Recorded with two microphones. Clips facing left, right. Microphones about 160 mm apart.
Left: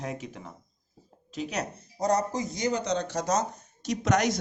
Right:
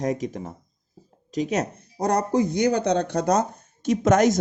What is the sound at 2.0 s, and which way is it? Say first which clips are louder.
Speech: right 5 dB; 60° right (ahead or behind).